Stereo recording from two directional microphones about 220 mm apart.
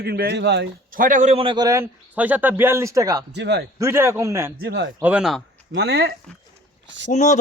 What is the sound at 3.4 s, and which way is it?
Speech, 50° right (ahead or behind).